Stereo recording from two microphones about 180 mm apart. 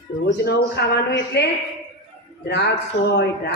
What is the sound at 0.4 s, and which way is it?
A woman's voice, 70° left (ahead or behind).